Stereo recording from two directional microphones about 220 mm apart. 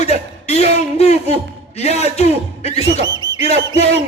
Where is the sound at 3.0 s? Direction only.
20° right (ahead or behind).